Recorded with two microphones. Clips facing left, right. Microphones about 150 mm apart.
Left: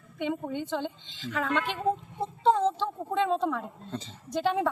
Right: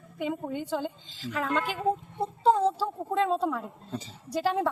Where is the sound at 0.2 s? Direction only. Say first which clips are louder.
Even; 5° right (ahead or behind).